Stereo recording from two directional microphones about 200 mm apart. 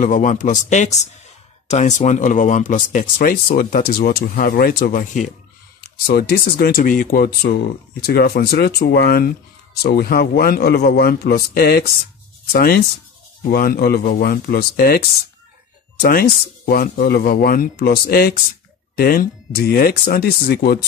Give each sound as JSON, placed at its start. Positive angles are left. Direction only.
{"t": 0.0, "sound": "speech", "side_deg": 40}
{"t": 5.8, "sound": "speech", "side_deg": 50}